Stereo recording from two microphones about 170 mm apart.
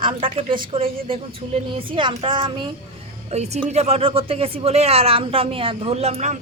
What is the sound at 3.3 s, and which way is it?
A woman's voice, 40° right (ahead or behind).